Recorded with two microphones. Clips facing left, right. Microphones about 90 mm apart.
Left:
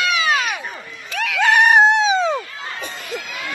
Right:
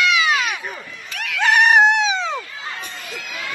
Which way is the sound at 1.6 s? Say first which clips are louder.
Left 1 dB; 30° left (ahead or behind).